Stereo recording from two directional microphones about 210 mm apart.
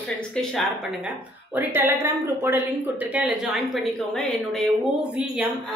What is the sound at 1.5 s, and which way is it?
Speech, 10° right (ahead or behind).